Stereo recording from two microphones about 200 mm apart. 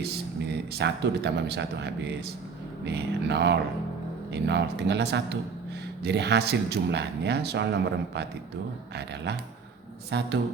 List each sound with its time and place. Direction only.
0.0 s speech: 55° right (ahead or behind)